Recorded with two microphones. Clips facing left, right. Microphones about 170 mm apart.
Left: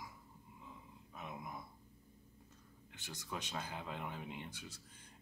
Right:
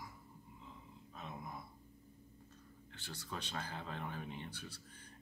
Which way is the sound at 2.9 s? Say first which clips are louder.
Left 1 dB; 15° left (ahead or behind).